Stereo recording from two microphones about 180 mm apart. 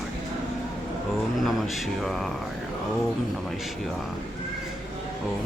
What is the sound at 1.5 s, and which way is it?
Speech, centre (ahead or behind).